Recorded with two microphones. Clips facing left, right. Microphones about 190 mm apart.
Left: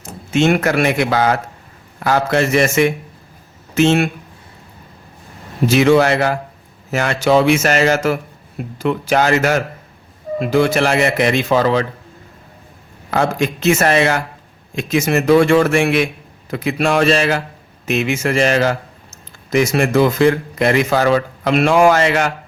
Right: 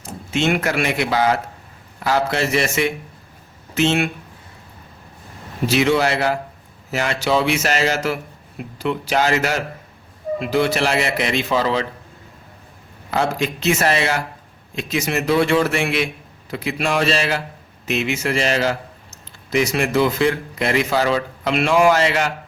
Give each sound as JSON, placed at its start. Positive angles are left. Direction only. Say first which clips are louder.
{"t": 0.3, "sound": "a man's voice", "louder": "left 5 dB", "side_deg": 45}
{"t": 5.6, "sound": "a man's voice", "louder": "left 5 dB", "side_deg": 45}
{"t": 13.1, "sound": "a man's voice", "louder": "left 3 dB", "side_deg": 50}